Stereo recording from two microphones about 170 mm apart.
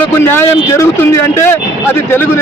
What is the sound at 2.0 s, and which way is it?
Speech, 15° left (ahead or behind).